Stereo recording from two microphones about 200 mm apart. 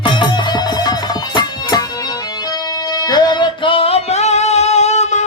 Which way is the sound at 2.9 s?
20° left (ahead or behind).